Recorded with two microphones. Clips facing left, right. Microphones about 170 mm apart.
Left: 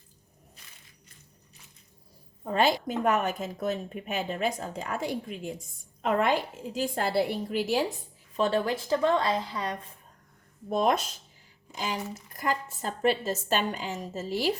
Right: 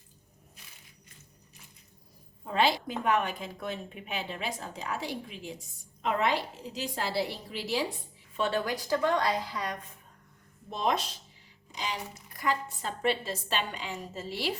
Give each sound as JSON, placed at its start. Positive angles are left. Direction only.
{"t": 2.4, "sound": "a woman's voice", "side_deg": 45}
{"t": 8.4, "sound": "a woman's voice", "side_deg": 35}
{"t": 10.7, "sound": "a woman's voice", "side_deg": 50}